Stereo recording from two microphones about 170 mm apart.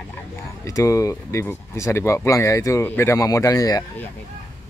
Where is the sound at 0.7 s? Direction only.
20° left (ahead or behind).